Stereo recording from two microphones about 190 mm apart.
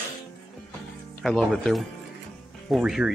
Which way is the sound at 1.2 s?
Centre (ahead or behind).